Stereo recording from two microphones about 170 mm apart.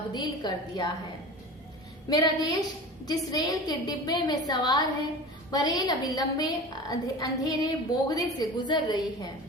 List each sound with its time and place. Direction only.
0.1 s a woman's voice: 25° left (ahead or behind)
2.0 s a woman's voice: 25° left (ahead or behind)